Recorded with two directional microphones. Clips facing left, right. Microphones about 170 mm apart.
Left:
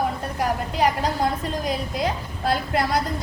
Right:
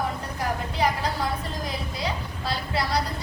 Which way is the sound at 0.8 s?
45° left (ahead or behind).